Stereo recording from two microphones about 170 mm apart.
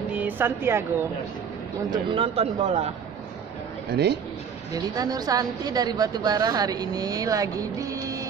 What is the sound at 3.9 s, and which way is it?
Speech, 80° right.